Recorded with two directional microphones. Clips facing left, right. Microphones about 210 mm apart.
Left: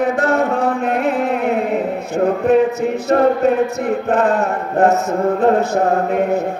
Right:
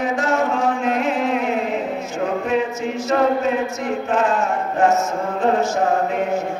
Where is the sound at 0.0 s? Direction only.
60° left (ahead or behind).